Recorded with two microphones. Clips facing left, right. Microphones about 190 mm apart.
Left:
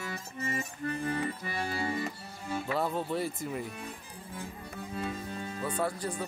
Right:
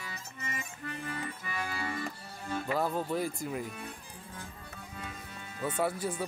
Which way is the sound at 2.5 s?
5° left (ahead or behind).